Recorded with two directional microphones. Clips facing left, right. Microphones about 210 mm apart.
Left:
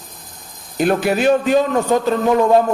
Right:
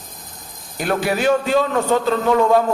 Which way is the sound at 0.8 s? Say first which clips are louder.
Left 4 dB; 20° left (ahead or behind).